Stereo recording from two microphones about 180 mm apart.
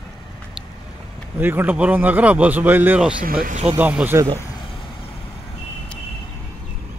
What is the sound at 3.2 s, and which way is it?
Speech, 50° right (ahead or behind).